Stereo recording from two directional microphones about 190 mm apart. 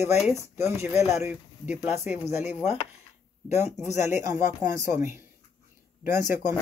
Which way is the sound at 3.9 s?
40° left (ahead or behind).